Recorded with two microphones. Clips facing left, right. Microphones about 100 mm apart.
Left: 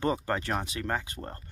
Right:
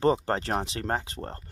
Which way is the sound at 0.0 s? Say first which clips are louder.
Right 5 dB; 30° right (ahead or behind).